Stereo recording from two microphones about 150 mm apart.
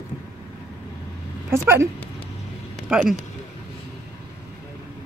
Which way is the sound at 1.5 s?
15° right (ahead or behind).